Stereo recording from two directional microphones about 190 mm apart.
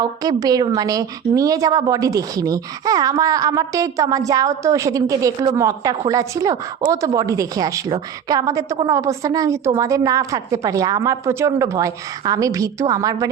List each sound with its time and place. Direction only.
0.0 s a woman's voice: 20° right (ahead or behind)